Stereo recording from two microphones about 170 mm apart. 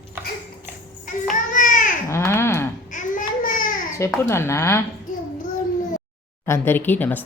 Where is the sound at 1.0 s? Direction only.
50° left (ahead or behind).